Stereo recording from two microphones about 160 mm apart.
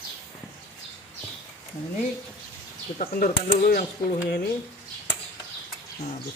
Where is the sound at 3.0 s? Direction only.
50° left (ahead or behind).